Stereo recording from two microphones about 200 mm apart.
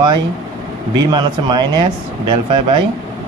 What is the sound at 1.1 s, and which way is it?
Speech, 20° right (ahead or behind).